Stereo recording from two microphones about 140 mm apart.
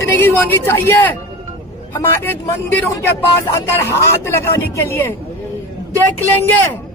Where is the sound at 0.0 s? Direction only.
15° left (ahead or behind).